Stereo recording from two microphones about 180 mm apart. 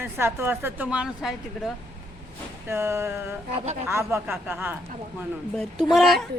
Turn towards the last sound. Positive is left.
turn(degrees=0)  # may be behind; listen again after turning